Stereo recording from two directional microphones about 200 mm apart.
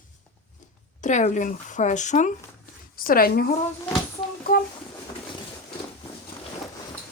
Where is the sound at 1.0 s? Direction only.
40° left (ahead or behind).